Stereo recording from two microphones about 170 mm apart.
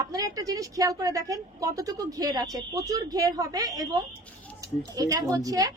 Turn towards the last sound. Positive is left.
turn(degrees=-20)  # may be behind; listen again after turning